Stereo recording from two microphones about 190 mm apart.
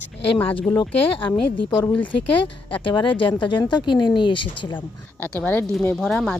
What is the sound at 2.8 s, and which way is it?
Speech, 25° left (ahead or behind).